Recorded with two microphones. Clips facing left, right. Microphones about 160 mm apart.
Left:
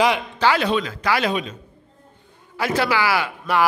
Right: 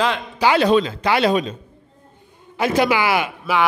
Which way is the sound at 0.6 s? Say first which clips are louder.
Right 6 dB; 35° right (ahead or behind).